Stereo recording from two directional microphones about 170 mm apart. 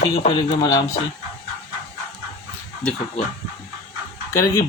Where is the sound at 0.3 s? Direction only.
25° left (ahead or behind).